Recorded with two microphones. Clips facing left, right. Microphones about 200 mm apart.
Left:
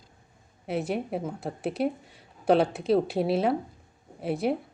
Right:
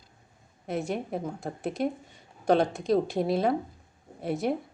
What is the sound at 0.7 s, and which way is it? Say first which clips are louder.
A woman's voice: left 2 dB; 5° left (ahead or behind).